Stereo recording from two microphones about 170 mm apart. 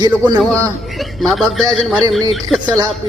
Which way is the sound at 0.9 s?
Centre (ahead or behind).